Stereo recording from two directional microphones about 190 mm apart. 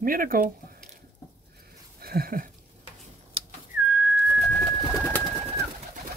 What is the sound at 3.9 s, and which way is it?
Pigeon, 5° right (ahead or behind).